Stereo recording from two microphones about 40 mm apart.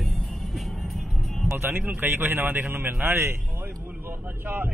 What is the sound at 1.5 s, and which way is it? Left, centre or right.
A man's voice, right.